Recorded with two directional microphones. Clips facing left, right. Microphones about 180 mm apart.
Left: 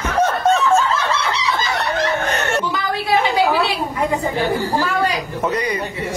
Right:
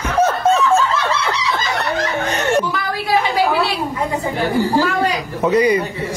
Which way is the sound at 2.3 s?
15° right (ahead or behind).